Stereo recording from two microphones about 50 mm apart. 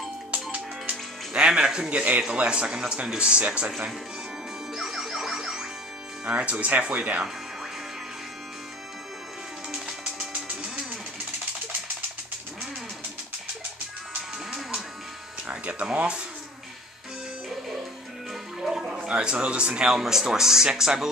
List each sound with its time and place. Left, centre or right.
0.3 s music: right
1.4 s a man's voice: centre
4.7 s music: centre
6.2 s a man's voice: right
9.7 s music: centre
15.4 s speech: right
18.6 s music: centre
19.0 s a man's voice: right
20.0 s speech: centre